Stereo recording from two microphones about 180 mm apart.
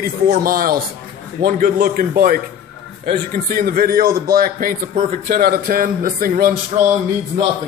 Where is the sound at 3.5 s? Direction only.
55° right (ahead or behind).